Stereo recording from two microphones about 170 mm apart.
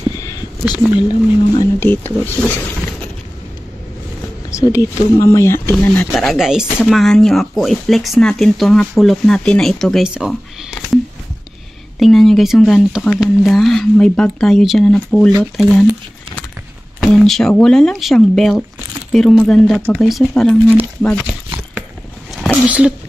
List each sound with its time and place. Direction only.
0.2 s a sound: 20° left (ahead or behind)
1.8 s speech: 10° left (ahead or behind)
4.6 s speech: 20° left (ahead or behind)
6.1 s speech: centre (ahead or behind)
12.0 s speech: centre (ahead or behind)
17.0 s speech: centre (ahead or behind)